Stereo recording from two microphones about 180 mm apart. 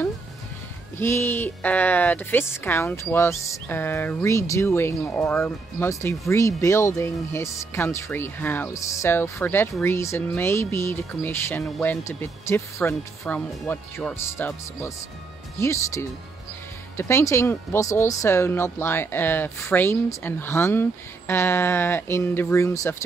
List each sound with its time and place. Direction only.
0.9 s speech: 15° left (ahead or behind)